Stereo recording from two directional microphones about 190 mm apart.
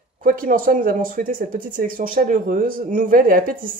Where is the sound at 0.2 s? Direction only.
45° right (ahead or behind).